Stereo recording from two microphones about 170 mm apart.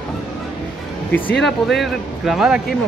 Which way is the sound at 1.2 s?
10° left (ahead or behind).